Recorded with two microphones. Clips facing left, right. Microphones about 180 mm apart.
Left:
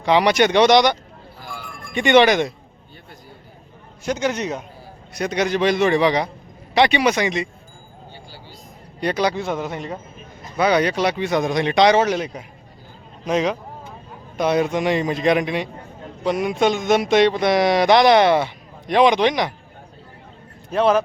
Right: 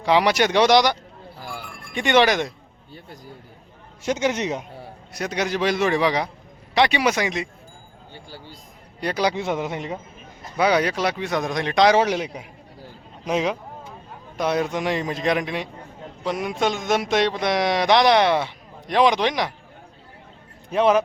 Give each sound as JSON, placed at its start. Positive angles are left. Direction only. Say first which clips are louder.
{"t": 0.0, "sound": "speech", "louder": "left 2 dB", "side_deg": -5}
{"t": 4.0, "sound": "a man's voice", "louder": "even", "side_deg": -20}
{"t": 5.1, "sound": "speech", "louder": "left 4 dB", "side_deg": -5}
{"t": 9.0, "sound": "a man's voice", "louder": "left 2 dB", "side_deg": -5}
{"t": 9.3, "sound": "a man's voice", "louder": "even", "side_deg": -20}
{"t": 10.6, "sound": "speech", "louder": "left 2 dB", "side_deg": -5}
{"t": 11.9, "sound": "a man's voice", "louder": "left 1 dB", "side_deg": -10}
{"t": 20.7, "sound": "a man's voice", "louder": "left 1 dB", "side_deg": -15}